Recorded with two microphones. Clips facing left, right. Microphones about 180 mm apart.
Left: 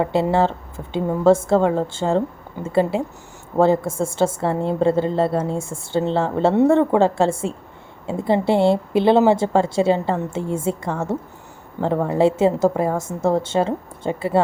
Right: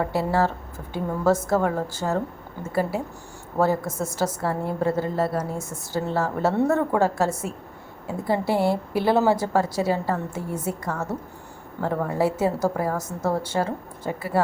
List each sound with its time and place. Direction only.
0.0 s a woman's voice: 25° left (ahead or behind)